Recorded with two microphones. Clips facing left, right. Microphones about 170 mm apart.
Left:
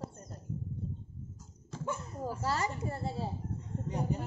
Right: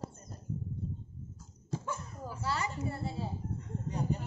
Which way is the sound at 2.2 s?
40° left (ahead or behind).